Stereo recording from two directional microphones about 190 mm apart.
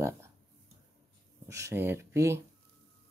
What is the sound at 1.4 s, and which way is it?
Speech, 15° right (ahead or behind).